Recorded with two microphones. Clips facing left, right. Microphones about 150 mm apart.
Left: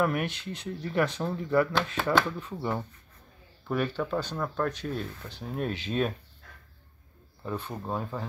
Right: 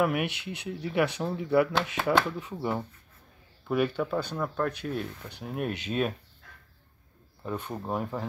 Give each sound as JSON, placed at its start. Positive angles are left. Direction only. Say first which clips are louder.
{"t": 0.0, "sound": "speech", "louder": "right 1 dB", "side_deg": -10}
{"t": 7.7, "sound": "speech", "louder": "right 2 dB", "side_deg": -15}